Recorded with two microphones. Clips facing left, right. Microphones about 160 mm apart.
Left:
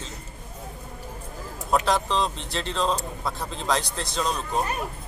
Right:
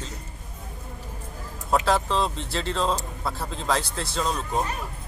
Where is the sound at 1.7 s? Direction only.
5° right (ahead or behind).